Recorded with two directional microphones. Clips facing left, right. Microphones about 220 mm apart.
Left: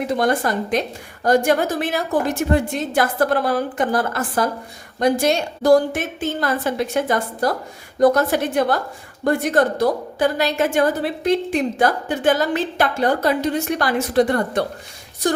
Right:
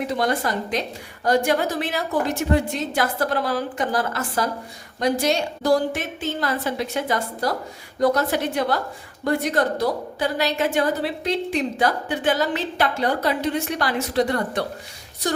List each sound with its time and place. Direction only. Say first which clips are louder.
0.1 s a woman's voice: left 6 dB; 50° left (ahead or behind)